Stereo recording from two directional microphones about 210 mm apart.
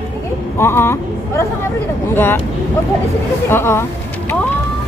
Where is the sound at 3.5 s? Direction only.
10° left (ahead or behind).